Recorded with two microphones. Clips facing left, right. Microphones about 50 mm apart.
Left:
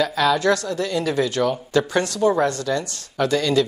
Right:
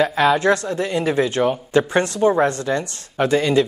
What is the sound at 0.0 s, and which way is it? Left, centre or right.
Speech, right.